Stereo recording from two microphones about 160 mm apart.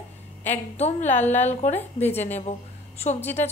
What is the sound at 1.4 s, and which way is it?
Speech, 45° left (ahead or behind).